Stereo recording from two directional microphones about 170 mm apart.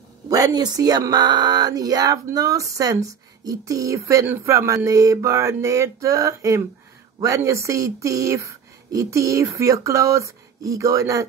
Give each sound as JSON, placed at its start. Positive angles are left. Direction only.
{"t": 0.3, "sound": "speech", "side_deg": -20}